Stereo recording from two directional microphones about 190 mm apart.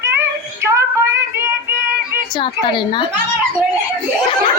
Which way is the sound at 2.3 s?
25° left (ahead or behind).